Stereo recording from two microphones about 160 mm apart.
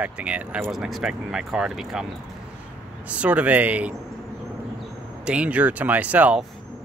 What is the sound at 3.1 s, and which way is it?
Speech, 10° right (ahead or behind).